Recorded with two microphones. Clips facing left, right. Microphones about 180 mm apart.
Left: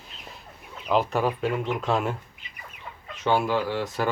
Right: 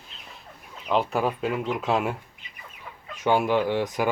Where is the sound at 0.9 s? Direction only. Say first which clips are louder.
Left 1 dB; centre (ahead or behind).